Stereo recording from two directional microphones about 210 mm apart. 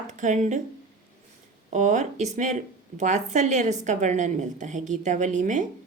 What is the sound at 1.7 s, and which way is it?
A woman's voice, 35° right (ahead or behind).